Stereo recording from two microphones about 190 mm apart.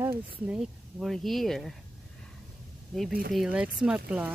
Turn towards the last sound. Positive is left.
turn(degrees=-10)  # may be behind; listen again after turning